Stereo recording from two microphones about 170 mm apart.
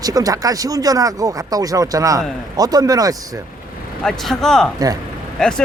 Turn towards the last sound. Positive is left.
turn(degrees=5)  # may be behind; listen again after turning